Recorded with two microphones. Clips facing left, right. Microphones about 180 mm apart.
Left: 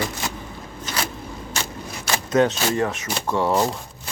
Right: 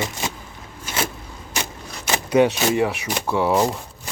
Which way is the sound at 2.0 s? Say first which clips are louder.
Right 2 dB; 15° right (ahead or behind).